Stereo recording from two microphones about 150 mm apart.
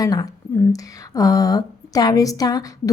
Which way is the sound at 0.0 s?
25° left (ahead or behind).